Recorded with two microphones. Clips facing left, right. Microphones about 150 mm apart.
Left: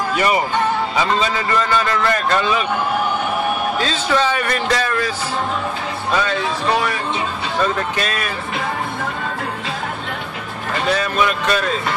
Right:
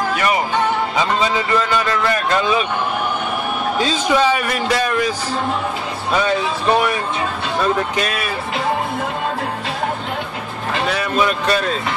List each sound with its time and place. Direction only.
1.3 s a man's voice: 15° right (ahead or behind)
3.7 s a man's voice: 15° right (ahead or behind)
11.1 s speech: 35° right (ahead or behind)